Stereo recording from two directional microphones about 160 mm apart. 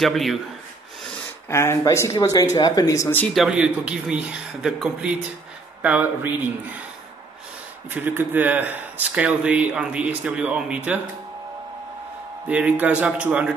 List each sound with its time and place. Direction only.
0.0 s speech: centre (ahead or behind)
1.5 s speech: 15° left (ahead or behind)
3.3 s speech: 5° right (ahead or behind)
7.9 s speech: 10° right (ahead or behind)
12.4 s speech: 10° right (ahead or behind)